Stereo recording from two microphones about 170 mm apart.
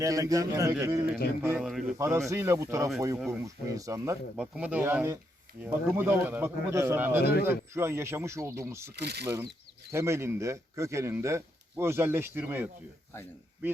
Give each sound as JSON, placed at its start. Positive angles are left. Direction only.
{"t": 0.0, "sound": "a man's voice", "side_deg": -20}
{"t": 1.6, "sound": "speech", "side_deg": 0}
{"t": 2.0, "sound": "a man's voice", "side_deg": -15}
{"t": 4.4, "sound": "speech", "side_deg": -5}
{"t": 7.2, "sound": "speech", "side_deg": 70}
{"t": 7.7, "sound": "speech", "side_deg": -15}
{"t": 9.0, "sound": "speech", "side_deg": -75}
{"t": 9.2, "sound": "speech", "side_deg": -15}